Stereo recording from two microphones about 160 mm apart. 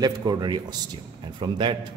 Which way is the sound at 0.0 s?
25° right (ahead or behind).